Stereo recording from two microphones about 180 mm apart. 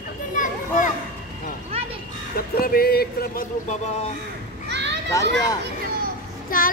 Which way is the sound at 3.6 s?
40° left (ahead or behind).